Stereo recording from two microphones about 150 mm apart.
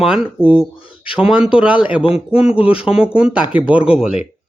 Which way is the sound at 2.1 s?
5° right (ahead or behind).